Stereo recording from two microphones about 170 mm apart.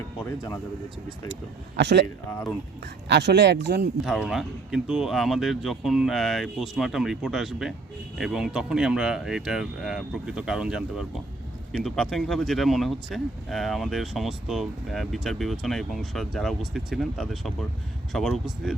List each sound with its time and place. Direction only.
0.3 s speech: 20° left (ahead or behind)
1.7 s speech: 90° right
4.0 s speech: centre (ahead or behind)